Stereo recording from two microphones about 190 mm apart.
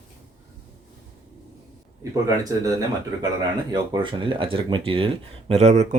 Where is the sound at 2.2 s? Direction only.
20° right (ahead or behind).